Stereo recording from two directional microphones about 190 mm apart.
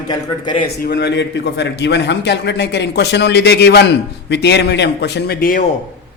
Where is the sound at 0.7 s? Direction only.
60° left (ahead or behind).